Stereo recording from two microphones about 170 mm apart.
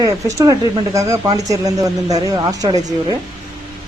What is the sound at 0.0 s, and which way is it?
Speech, 20° right (ahead or behind).